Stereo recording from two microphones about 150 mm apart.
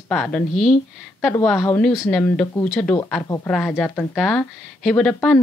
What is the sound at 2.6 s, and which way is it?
Speech, 5° left (ahead or behind).